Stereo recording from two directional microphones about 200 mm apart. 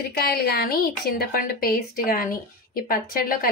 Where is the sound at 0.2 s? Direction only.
50° left (ahead or behind).